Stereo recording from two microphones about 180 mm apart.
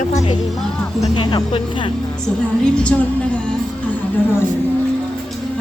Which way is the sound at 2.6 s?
5° left (ahead or behind).